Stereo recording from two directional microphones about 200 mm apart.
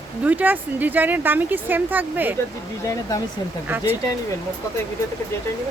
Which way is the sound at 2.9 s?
15° left (ahead or behind).